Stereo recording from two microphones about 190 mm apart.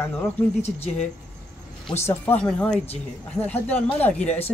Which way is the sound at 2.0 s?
10° left (ahead or behind).